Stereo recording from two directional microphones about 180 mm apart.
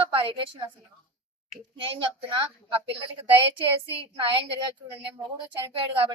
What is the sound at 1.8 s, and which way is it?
A woman's voice, 30° right (ahead or behind).